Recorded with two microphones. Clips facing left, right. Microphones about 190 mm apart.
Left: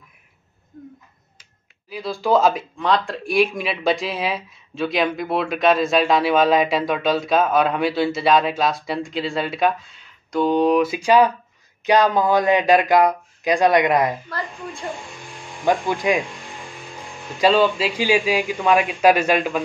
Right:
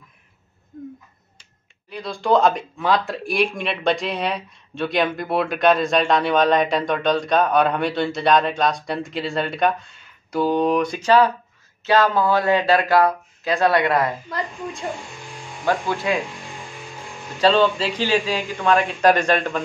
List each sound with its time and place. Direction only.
1.9 s speech: 5° left (ahead or behind)
15.6 s speech: 15° left (ahead or behind)
17.4 s speech: 10° left (ahead or behind)